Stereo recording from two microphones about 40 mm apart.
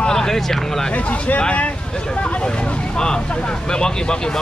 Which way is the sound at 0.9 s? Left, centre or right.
Left.